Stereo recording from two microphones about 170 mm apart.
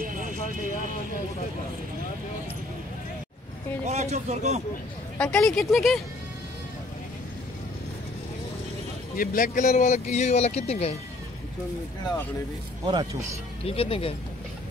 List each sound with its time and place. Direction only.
0.0 s vehicle: 50° right (ahead or behind)
3.8 s speech: 40° right (ahead or behind)
5.2 s speech: 5° left (ahead or behind)
9.1 s speech: 55° left (ahead or behind); by 11.0 s 40° left (ahead or behind)
12.8 s speech: 25° right (ahead or behind)
13.7 s speech: 35° left (ahead or behind)